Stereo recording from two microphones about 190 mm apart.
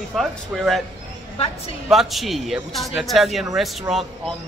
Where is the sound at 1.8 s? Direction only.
Centre (ahead or behind).